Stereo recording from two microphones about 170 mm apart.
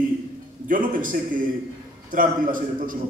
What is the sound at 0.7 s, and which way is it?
A man's voice, 50° right (ahead or behind).